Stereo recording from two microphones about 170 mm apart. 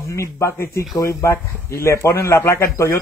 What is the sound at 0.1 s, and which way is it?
A man's voice, 15° left (ahead or behind).